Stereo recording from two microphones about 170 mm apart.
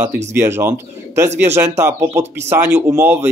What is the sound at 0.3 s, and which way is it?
Speech, 15° right (ahead or behind).